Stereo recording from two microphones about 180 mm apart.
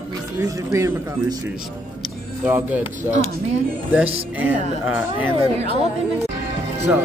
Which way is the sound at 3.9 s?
10° right (ahead or behind).